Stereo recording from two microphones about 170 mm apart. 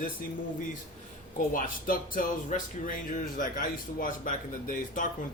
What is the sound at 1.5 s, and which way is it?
Speech, 55° left (ahead or behind).